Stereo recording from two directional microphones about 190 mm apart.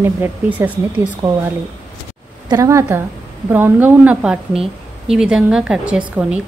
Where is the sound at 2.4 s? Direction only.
15° right (ahead or behind).